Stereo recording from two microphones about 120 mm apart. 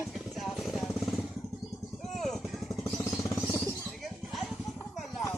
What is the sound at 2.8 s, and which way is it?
Vehicle, 20° left (ahead or behind).